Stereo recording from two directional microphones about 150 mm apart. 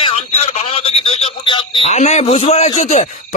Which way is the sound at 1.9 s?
50° left (ahead or behind).